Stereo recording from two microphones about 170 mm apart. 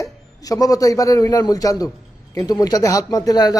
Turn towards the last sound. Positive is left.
turn(degrees=20)  # may be behind; listen again after turning